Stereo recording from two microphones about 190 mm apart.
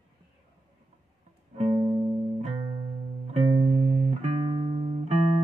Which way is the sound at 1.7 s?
25° right (ahead or behind).